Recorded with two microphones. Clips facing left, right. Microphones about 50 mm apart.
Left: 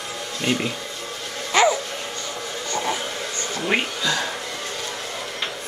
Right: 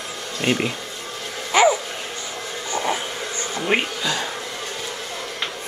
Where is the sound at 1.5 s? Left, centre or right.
Centre.